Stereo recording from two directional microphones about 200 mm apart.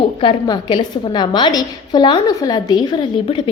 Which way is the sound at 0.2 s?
25° left (ahead or behind).